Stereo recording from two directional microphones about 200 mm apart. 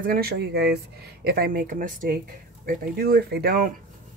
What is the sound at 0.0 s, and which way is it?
Speech, 50° right (ahead or behind).